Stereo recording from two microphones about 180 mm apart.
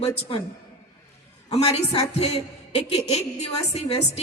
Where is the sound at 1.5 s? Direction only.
35° left (ahead or behind).